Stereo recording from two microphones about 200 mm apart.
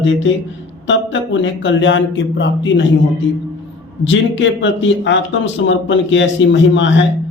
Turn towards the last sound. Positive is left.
turn(degrees=65)  # may be behind; listen again after turning